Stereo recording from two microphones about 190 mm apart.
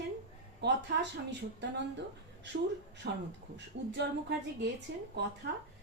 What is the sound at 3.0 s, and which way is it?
A woman's voice, 60° right (ahead or behind).